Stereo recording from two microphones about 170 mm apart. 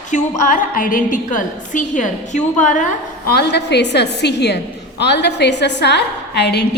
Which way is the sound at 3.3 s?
75° left (ahead or behind).